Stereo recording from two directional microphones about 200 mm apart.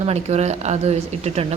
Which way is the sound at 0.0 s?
35° right (ahead or behind).